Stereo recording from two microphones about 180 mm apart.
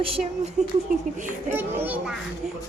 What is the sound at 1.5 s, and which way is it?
Speech, 10° right (ahead or behind).